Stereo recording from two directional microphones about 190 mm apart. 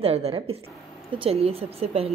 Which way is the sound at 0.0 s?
30° right (ahead or behind).